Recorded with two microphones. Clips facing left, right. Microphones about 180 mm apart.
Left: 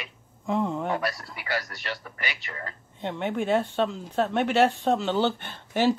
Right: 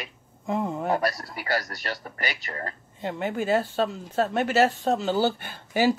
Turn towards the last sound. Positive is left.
turn(degrees=-10)  # may be behind; listen again after turning